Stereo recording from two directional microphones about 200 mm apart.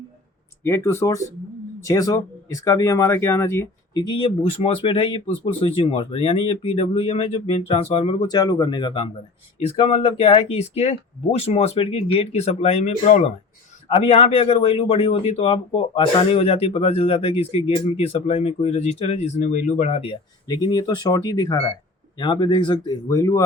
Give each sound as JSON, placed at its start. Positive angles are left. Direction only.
{"t": 0.6, "sound": "speech", "side_deg": 15}